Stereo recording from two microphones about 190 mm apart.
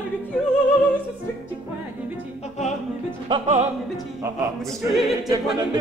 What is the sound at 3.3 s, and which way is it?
Speech, 25° right (ahead or behind).